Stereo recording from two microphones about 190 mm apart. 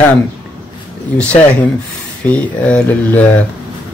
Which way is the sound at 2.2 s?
5° left (ahead or behind).